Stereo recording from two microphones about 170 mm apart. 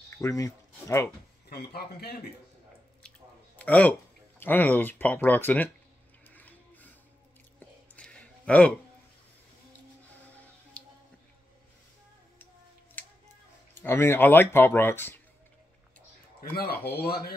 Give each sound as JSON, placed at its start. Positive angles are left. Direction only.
{"t": 0.2, "sound": "speech", "side_deg": 20}
{"t": 1.5, "sound": "speech", "side_deg": 70}
{"t": 3.5, "sound": "a sound", "side_deg": 10}
{"t": 4.4, "sound": "speech", "side_deg": 10}
{"t": 6.3, "sound": "mechanisms", "side_deg": 10}
{"t": 7.9, "sound": "a sound", "side_deg": 5}
{"t": 10.8, "sound": "music", "side_deg": 10}
{"t": 13.0, "sound": "a sound", "side_deg": 10}
{"t": 13.7, "sound": "speech", "side_deg": 15}
{"t": 16.5, "sound": "speech", "side_deg": 65}